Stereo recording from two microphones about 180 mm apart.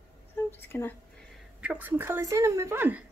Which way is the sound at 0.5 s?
10° left (ahead or behind).